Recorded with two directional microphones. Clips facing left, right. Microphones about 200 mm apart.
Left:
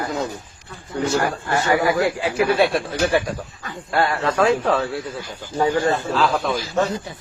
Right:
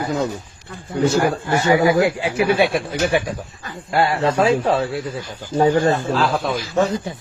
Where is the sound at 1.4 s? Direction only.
20° right (ahead or behind).